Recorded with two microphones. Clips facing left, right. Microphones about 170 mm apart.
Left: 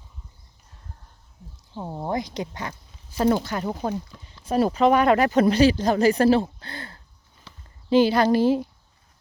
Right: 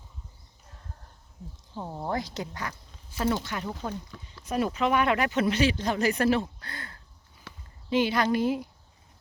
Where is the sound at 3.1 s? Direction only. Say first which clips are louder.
Left 7 dB; 40° left (ahead or behind).